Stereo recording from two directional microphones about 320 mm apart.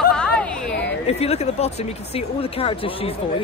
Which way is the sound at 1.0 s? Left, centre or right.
Centre.